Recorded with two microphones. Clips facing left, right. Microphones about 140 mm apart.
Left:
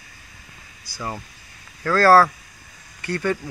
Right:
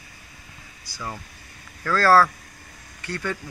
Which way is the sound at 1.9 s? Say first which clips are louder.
Left 3 dB; 45° left (ahead or behind).